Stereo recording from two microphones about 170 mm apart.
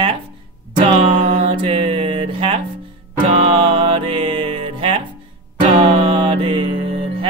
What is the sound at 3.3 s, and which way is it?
Music, 35° right (ahead or behind).